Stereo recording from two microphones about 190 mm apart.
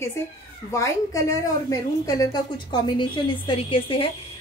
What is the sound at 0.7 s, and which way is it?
A woman's voice, 15° left (ahead or behind).